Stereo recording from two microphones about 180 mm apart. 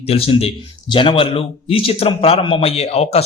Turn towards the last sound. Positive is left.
turn(degrees=35)  # may be behind; listen again after turning